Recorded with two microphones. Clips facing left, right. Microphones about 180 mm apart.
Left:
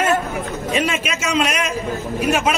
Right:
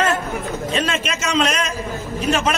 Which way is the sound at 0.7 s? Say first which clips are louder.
Left 2 dB; 10° left (ahead or behind).